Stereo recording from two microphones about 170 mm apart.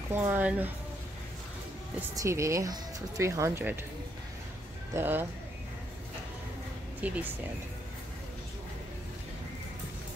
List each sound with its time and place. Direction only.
0.1 s speech: 10° right (ahead or behind)
2.0 s speech: 15° right (ahead or behind)
4.9 s speech: 10° right (ahead or behind)
7.0 s speech: 10° right (ahead or behind)